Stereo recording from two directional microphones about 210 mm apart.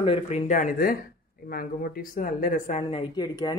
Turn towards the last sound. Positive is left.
turn(degrees=20)  # may be behind; listen again after turning